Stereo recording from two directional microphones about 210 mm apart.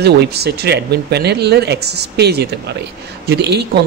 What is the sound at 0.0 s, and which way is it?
Speech, 50° right (ahead or behind).